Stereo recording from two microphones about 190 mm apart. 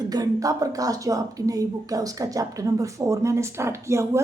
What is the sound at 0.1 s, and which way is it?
A woman's voice, 20° right (ahead or behind).